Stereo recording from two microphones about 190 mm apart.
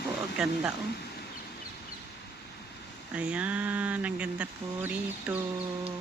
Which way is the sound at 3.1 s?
5° right (ahead or behind).